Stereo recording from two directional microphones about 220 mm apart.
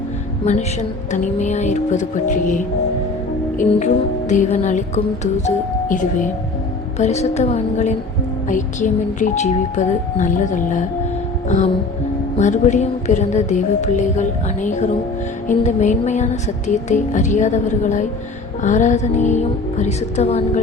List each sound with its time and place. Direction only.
0.4 s a woman's voice: 30° left (ahead or behind)